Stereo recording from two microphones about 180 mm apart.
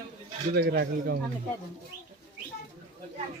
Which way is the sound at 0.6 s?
65° right (ahead or behind).